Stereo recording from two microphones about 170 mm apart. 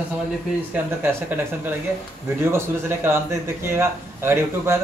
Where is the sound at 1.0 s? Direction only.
10° right (ahead or behind).